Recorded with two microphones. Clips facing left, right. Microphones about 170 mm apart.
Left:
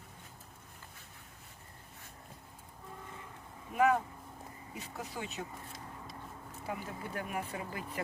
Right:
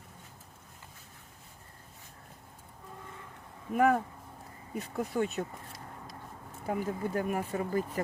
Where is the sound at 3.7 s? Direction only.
50° right (ahead or behind).